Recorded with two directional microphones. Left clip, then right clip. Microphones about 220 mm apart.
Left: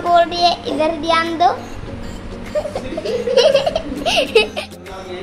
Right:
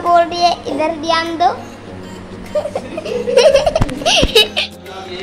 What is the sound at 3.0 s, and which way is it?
Laughter, centre (ahead or behind).